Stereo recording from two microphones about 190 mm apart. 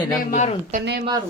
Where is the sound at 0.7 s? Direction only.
40° right (ahead or behind).